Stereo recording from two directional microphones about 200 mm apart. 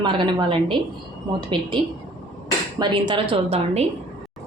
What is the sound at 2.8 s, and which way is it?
A woman's voice, 25° right (ahead or behind).